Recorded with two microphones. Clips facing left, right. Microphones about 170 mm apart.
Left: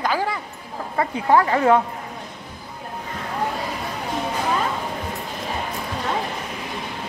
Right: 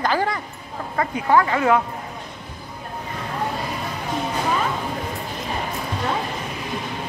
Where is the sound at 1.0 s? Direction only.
30° left (ahead or behind).